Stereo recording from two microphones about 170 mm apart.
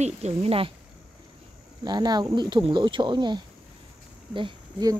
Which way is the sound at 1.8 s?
25° right (ahead or behind).